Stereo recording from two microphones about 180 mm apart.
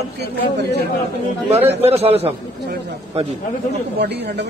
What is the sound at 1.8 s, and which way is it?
Speech, 35° right (ahead or behind).